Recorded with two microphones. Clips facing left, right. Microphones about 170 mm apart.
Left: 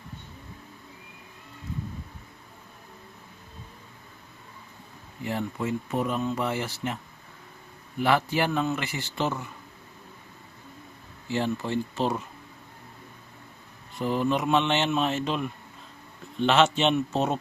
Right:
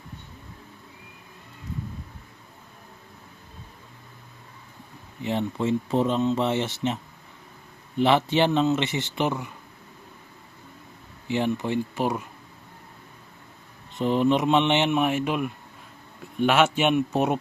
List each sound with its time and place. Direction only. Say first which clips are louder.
5.2 s speech: right 4 dB; 20° right (ahead or behind)
11.3 s speech: right 3 dB; 15° right (ahead or behind)
13.9 s speech: right 4 dB; 20° right (ahead or behind)